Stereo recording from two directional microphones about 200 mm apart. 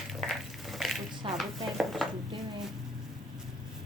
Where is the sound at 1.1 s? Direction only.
25° right (ahead or behind).